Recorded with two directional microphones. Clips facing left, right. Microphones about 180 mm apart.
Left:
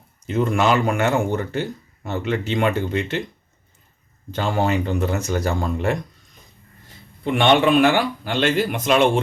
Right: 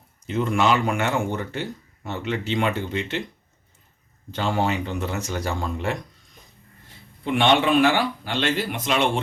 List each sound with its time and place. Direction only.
0.3 s speech: 45° left (ahead or behind)
4.3 s speech: 45° left (ahead or behind)
7.3 s speech: 50° left (ahead or behind)